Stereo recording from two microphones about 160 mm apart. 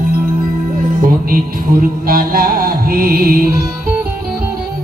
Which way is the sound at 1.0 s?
65° right (ahead or behind).